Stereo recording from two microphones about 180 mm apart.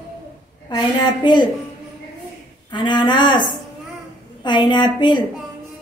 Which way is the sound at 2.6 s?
25° left (ahead or behind).